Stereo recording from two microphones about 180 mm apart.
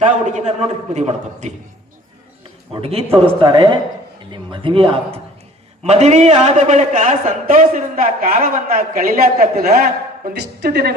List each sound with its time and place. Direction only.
0.0 s a man's voice: 40° right (ahead or behind)
2.7 s a man's voice: 30° right (ahead or behind); by 10.9 s 65° right (ahead or behind)